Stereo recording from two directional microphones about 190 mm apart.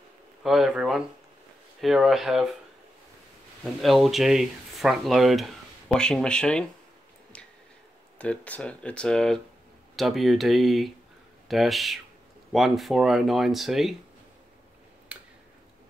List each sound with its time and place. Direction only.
0.4 s speech: centre (ahead or behind)
3.8 s speech: centre (ahead or behind)
8.2 s speech: 5° left (ahead or behind)
15.1 s tick-tock: 5° right (ahead or behind)